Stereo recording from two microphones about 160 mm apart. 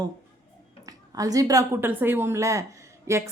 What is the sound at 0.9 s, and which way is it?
Speech, 20° right (ahead or behind).